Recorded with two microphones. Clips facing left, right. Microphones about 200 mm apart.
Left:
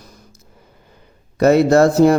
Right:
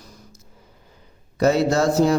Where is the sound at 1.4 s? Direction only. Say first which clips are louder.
Left 6 dB; 60° left (ahead or behind).